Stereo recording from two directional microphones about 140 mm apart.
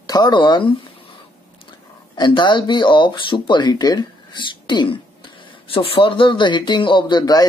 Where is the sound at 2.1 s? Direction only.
35° left (ahead or behind).